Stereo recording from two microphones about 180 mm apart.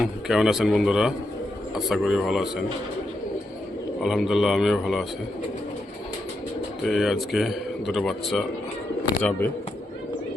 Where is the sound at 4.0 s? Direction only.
Centre (ahead or behind).